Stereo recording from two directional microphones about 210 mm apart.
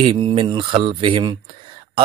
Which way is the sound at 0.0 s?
25° right (ahead or behind).